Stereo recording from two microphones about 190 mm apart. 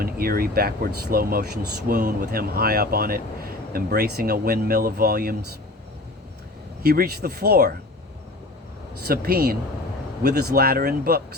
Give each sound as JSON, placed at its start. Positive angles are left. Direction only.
{"t": 0.0, "sound": "speech", "side_deg": -50}
{"t": 6.8, "sound": "speech", "side_deg": -55}
{"t": 9.0, "sound": "speech", "side_deg": -55}